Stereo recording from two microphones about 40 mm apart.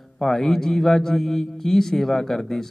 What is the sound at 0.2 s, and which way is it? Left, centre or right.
A man's voice, centre.